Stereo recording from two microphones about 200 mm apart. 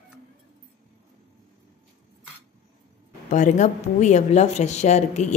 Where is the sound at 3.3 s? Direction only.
40° left (ahead or behind).